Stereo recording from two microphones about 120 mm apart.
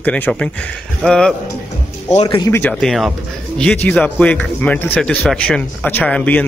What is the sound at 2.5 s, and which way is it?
Speech, 15° left (ahead or behind).